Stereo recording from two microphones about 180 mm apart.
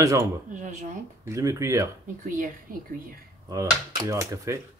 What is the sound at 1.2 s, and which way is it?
Speech, 15° right (ahead or behind).